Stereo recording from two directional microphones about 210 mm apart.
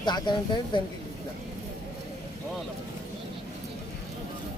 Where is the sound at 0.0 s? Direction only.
20° left (ahead or behind).